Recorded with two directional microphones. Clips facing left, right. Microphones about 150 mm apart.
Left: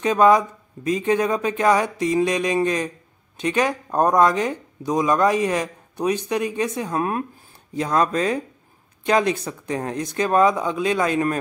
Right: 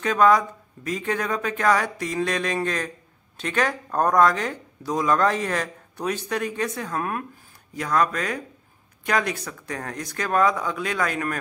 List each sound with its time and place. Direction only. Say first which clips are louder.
0.0 s speech: left 3 dB; 20° left (ahead or behind)